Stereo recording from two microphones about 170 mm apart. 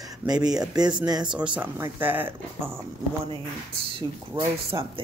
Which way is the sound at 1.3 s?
5° right (ahead or behind).